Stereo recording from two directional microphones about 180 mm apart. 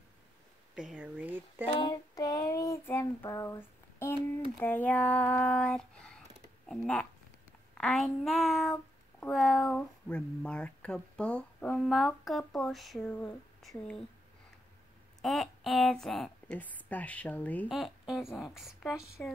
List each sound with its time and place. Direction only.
0.7 s speech: 5° right (ahead or behind)
1.8 s child singing: 20° left (ahead or behind)
4.6 s speech: 10° left (ahead or behind)
15.2 s speech: centre (ahead or behind)
17.6 s speech: centre (ahead or behind)